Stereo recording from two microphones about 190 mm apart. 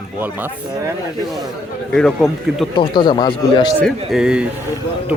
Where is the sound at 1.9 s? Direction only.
5° left (ahead or behind).